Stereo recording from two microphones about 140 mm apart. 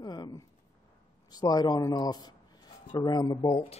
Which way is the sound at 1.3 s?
30° left (ahead or behind).